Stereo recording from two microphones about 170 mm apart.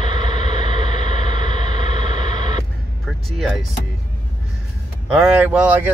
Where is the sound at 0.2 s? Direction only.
45° left (ahead or behind).